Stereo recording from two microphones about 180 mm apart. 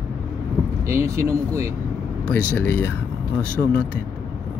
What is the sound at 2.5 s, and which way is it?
Speech, 10° left (ahead or behind).